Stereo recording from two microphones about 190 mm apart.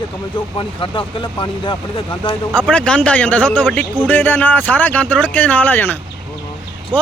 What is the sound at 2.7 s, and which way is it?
Speech, 5° left (ahead or behind).